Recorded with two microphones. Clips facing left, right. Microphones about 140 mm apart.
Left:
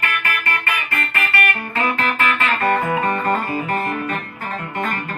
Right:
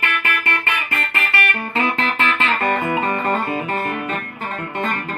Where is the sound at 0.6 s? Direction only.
25° right (ahead or behind).